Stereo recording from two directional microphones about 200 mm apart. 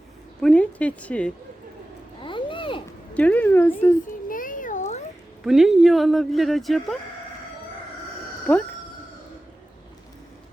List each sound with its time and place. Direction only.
0.4 s speech: 5° left (ahead or behind)
2.2 s a sound: 25° left (ahead or behind)
3.2 s speech: 5° left (ahead or behind)
4.3 s a sound: 40° left (ahead or behind)
5.4 s speech: centre (ahead or behind)
8.5 s speech: 10° left (ahead or behind)